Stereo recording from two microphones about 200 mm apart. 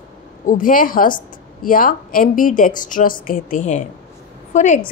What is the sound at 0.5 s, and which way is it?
A woman's voice, 45° left (ahead or behind).